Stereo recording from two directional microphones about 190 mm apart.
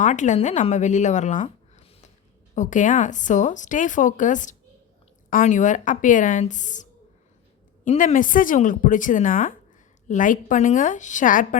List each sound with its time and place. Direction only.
0.0 s a woman's voice: 40° left (ahead or behind)
7.9 s a woman's voice: 45° left (ahead or behind)